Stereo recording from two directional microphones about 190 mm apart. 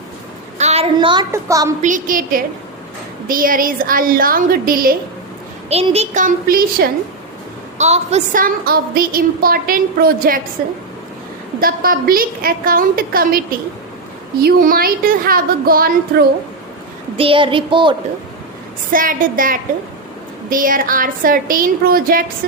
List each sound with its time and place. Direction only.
0.6 s a sound: 35° right (ahead or behind)
0.9 s a woman's voice: 20° right (ahead or behind)
1.8 s a woman's voice: 45° right (ahead or behind)
5.6 s a child's voice: 35° right (ahead or behind); by 6.9 s 50° right (ahead or behind)
7.8 s a woman's voice: 35° right (ahead or behind)
11.6 s a woman's voice: 50° right (ahead or behind)
17.2 s a woman's voice: 30° right (ahead or behind)
18.9 s a woman's voice: 45° right (ahead or behind)